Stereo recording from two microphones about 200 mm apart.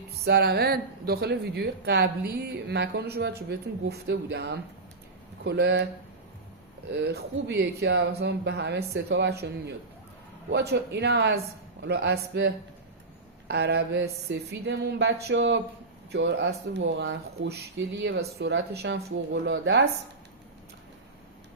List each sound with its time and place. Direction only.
0.3 s speech: 55° right (ahead or behind)
7.0 s speech: 55° right (ahead or behind)